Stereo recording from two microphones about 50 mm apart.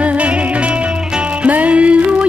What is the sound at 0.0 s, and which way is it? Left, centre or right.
Music, right.